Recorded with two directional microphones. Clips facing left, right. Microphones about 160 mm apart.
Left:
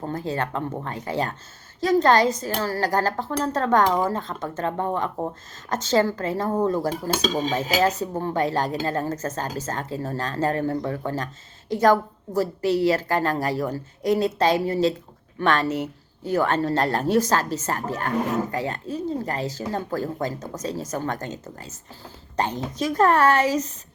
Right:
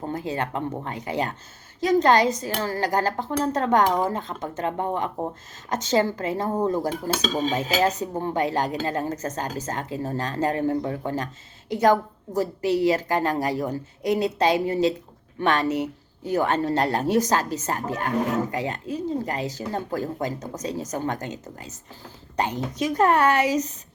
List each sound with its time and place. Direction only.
0.0 s a woman's voice: 15° right (ahead or behind)